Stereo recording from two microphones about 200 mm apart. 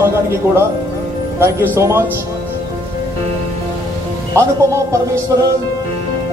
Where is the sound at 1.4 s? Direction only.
10° right (ahead or behind).